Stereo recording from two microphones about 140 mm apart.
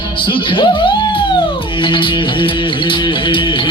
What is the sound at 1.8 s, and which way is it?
Music, 35° left (ahead or behind).